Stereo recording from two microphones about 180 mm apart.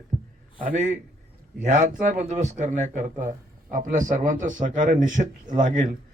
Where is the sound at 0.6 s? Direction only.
45° right (ahead or behind).